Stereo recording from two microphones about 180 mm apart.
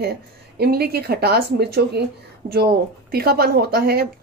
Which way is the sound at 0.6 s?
60° right (ahead or behind).